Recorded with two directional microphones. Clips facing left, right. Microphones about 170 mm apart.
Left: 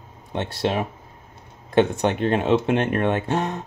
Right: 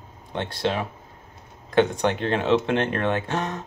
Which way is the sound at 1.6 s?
20° left (ahead or behind).